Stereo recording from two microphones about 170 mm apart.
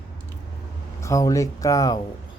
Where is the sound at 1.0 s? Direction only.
20° left (ahead or behind).